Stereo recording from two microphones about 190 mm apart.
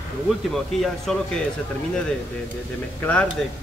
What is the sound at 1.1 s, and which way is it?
Speech, centre (ahead or behind).